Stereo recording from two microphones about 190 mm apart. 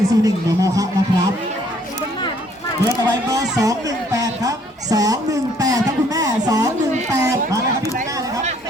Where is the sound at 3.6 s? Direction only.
20° right (ahead or behind).